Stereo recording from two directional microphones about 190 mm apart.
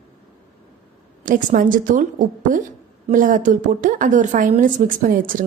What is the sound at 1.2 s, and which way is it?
A woman's voice, 45° right (ahead or behind).